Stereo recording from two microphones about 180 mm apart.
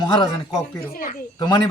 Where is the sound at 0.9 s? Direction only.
50° left (ahead or behind).